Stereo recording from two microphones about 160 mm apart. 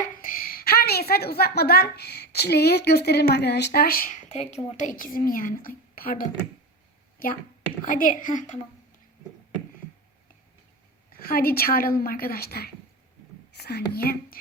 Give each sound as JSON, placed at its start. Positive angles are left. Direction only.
{"t": 0.0, "sound": "a woman's voice", "side_deg": 60}
{"t": 4.3, "sound": "a woman's voice", "side_deg": 45}
{"t": 7.9, "sound": "a woman's voice", "side_deg": 60}
{"t": 11.1, "sound": "a woman's voice", "side_deg": 65}
{"t": 13.5, "sound": "speech", "side_deg": 90}